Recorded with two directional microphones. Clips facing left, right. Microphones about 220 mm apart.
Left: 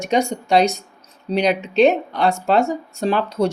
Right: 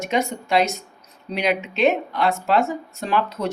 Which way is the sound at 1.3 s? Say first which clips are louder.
Left 4 dB; 35° left (ahead or behind).